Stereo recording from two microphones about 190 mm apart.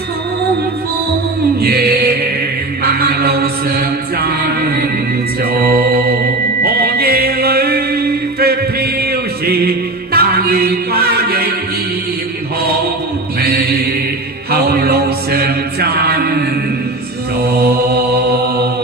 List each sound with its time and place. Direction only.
1.6 s music: 55° right (ahead or behind)
5.4 s mantra: 55° right (ahead or behind)
6.6 s music: 55° right (ahead or behind)
13.4 s mantra: 55° right (ahead or behind)
17.4 s mantra: 55° right (ahead or behind)